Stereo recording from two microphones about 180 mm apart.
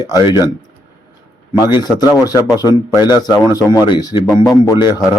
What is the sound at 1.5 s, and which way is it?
A man's voice, 20° left (ahead or behind).